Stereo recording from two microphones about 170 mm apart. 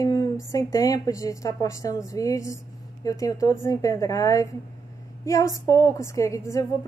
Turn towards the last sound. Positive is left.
turn(degrees=20)  # may be behind; listen again after turning